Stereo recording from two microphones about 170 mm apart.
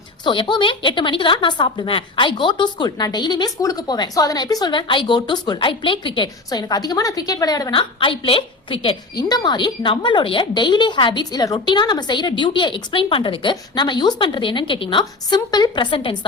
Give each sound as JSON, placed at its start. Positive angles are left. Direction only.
{"t": 0.3, "sound": "a woman's voice", "side_deg": 30}